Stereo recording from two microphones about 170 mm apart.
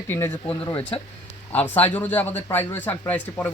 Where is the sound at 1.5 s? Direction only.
10° left (ahead or behind).